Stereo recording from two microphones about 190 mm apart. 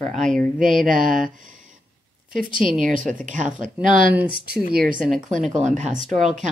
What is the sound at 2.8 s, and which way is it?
Speech, 45° right (ahead or behind).